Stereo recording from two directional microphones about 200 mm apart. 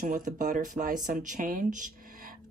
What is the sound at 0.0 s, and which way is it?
Speech, 40° right (ahead or behind).